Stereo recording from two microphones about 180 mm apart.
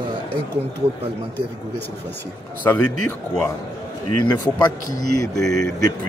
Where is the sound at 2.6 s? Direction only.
10° left (ahead or behind).